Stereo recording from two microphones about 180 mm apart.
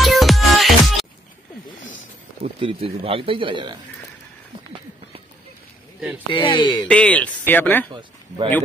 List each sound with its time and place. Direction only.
0.0 s music: centre (ahead or behind)
2.4 s speech: 30° right (ahead or behind)
5.9 s speech: 10° right (ahead or behind)
6.3 s speech: 25° left (ahead or behind)
6.9 s speech: 5° left (ahead or behind)